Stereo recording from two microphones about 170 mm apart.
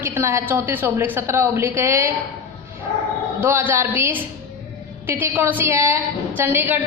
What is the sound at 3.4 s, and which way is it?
A woman's voice, 10° right (ahead or behind).